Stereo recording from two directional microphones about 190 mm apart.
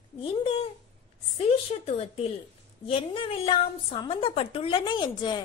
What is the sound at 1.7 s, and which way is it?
A woman's voice, 30° left (ahead or behind).